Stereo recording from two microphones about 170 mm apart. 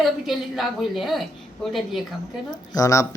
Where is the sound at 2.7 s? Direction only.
20° left (ahead or behind).